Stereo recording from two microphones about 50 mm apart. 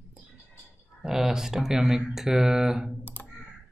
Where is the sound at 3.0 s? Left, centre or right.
Left.